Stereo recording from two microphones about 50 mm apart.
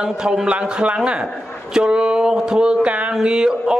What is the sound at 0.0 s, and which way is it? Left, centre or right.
Speech, centre.